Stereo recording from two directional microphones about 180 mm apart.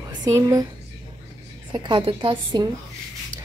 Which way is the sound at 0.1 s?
20° right (ahead or behind).